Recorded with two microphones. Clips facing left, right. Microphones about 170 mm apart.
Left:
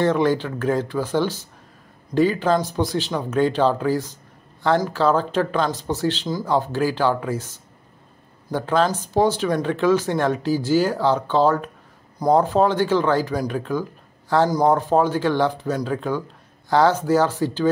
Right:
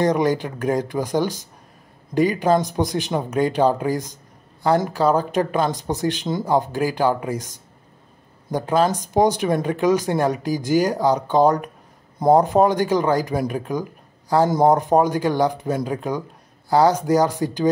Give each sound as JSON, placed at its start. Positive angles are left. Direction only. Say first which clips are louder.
{"t": 0.0, "sound": "speech", "louder": "even", "side_deg": -15}